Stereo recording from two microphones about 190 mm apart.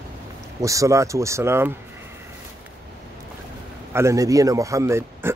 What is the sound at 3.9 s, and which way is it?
A man's voice, 15° right (ahead or behind).